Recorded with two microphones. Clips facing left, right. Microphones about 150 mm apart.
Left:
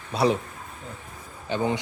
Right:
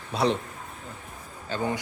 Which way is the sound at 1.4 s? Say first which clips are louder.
Left 3 dB; 20° left (ahead or behind).